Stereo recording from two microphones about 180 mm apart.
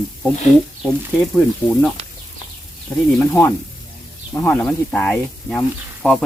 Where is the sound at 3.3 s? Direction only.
15° left (ahead or behind).